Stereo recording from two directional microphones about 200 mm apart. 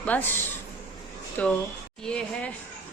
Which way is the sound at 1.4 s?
5° left (ahead or behind).